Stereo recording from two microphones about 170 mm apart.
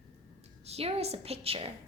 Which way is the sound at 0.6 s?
35° right (ahead or behind).